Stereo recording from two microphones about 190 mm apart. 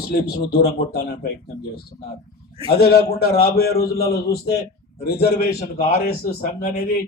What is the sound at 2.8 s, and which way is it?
A man's voice, 55° left (ahead or behind).